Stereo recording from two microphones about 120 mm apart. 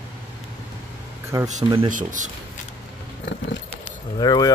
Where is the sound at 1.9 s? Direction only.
90° right.